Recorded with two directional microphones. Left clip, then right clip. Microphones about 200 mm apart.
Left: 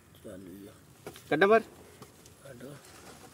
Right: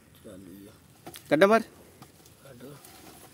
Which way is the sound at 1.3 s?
65° right (ahead or behind).